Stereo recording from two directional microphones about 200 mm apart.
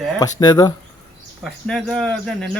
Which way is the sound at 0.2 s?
20° left (ahead or behind).